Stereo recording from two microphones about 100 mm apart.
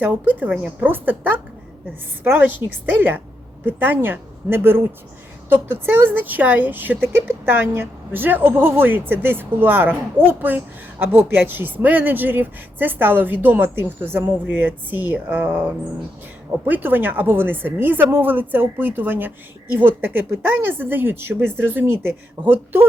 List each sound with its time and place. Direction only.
0.0 s a woman's voice: 15° right (ahead or behind)
16.6 s speech: 20° right (ahead or behind)